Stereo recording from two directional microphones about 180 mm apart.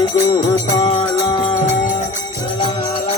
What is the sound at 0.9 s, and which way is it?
Music, 30° left (ahead or behind).